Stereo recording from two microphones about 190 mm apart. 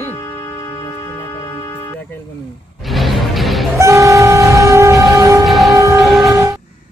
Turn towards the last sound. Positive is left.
turn(degrees=0)  # may be behind; listen again after turning